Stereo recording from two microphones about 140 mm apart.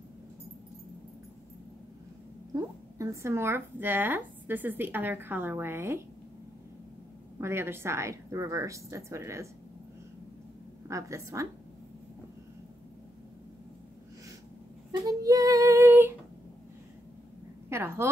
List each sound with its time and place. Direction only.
2.5 s a woman's voice: 20° right (ahead or behind)
7.3 s a woman's voice: 20° right (ahead or behind)
10.9 s a woman's voice: 20° right (ahead or behind)
14.9 s child singing: 25° right (ahead or behind)
17.6 s a woman's voice: 20° right (ahead or behind)